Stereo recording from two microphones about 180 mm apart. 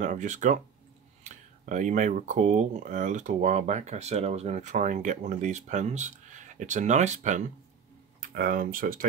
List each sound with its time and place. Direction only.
0.0 s speech: 45° right (ahead or behind)
8.2 s speech: 55° right (ahead or behind)